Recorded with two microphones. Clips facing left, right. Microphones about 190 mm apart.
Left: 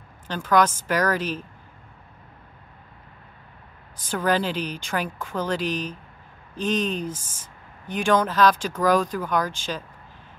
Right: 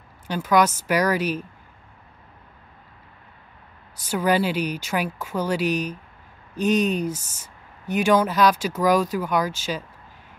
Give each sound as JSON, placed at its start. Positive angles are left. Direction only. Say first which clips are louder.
{"t": 0.3, "sound": "speech", "louder": "right 1 dB", "side_deg": -10}
{"t": 4.1, "sound": "speech", "louder": "right 2 dB", "side_deg": -10}